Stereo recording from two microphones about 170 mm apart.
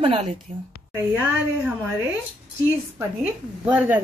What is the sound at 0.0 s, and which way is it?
Speech, 35° right (ahead or behind).